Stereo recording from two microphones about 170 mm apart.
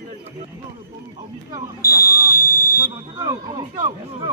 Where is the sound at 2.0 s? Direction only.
60° left (ahead or behind).